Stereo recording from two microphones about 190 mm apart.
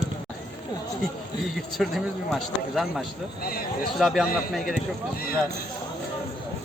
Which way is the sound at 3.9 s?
Centre (ahead or behind).